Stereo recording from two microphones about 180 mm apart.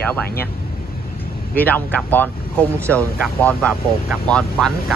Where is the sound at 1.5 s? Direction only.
10° left (ahead or behind).